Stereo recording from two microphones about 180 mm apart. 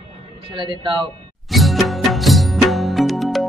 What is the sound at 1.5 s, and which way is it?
Music, centre (ahead or behind).